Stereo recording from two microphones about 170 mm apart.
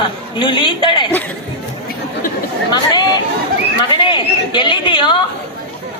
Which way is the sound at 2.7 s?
25° left (ahead or behind).